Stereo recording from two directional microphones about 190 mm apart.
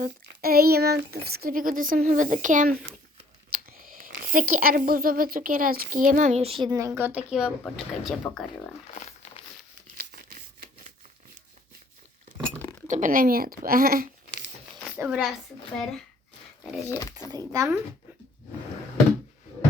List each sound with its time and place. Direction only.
0.0 s speech: 55° right (ahead or behind); by 8.7 s centre (ahead or behind)
9.0 s crumpling: 35° left (ahead or behind)
10.0 s a sound: 50° right (ahead or behind)
12.9 s speech: 45° right (ahead or behind)
14.9 s speech: 5° right (ahead or behind)
16.9 s a child's voice: 15° left (ahead or behind)
17.2 s speech: 20° right (ahead or behind)